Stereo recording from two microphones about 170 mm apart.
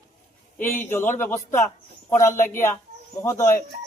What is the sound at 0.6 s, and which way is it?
A man's voice, 15° left (ahead or behind).